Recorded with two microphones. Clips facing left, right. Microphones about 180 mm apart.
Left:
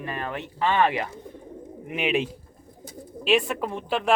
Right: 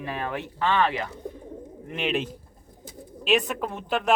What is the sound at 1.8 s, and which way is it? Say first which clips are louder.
Speech: left 2 dB; 5° left (ahead or behind).